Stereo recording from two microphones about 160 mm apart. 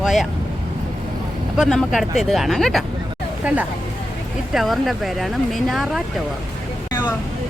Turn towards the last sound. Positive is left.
turn(degrees=0)  # may be behind; listen again after turning